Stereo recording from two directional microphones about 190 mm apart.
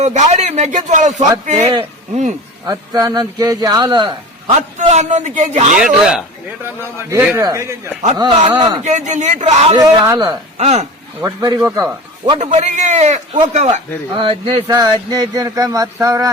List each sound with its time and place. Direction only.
0.0 s a man's voice: 40° right (ahead or behind)
2.6 s speech: 20° right (ahead or behind)
4.8 s a man's voice: 40° right (ahead or behind)
5.7 s speech: 5° right (ahead or behind); by 8.8 s 20° right (ahead or behind)
8.8 s a man's voice: 40° right (ahead or behind)
9.7 s speech: 15° right (ahead or behind)
10.6 s a man's voice: 35° right (ahead or behind)
11.2 s speech: 15° right (ahead or behind)
12.4 s a man's voice: 35° right (ahead or behind)
14.2 s speech: 25° right (ahead or behind)